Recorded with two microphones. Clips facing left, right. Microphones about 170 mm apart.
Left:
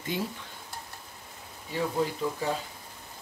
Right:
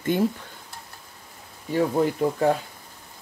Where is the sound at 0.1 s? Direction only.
50° right (ahead or behind).